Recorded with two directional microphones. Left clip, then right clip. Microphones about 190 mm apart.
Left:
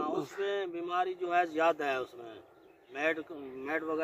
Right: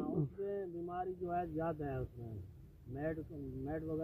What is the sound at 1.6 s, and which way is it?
Speech, 30° left (ahead or behind).